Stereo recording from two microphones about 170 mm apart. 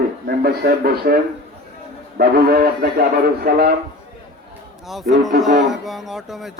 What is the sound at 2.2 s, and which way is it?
Speech, 65° right (ahead or behind).